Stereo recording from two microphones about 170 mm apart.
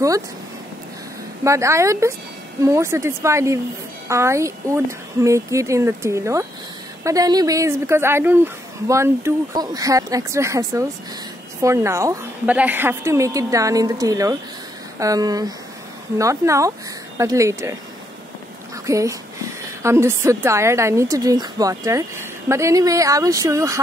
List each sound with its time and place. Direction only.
1.4 s a woman's voice: 15° right (ahead or behind)
18.9 s a woman's voice: 20° right (ahead or behind)